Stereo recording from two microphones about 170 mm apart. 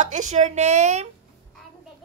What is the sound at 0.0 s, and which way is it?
Speech, 45° right (ahead or behind).